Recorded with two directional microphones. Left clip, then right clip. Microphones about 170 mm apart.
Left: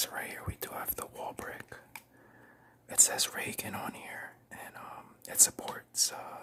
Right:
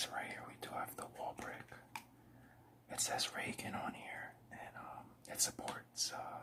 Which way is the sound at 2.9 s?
45° left (ahead or behind).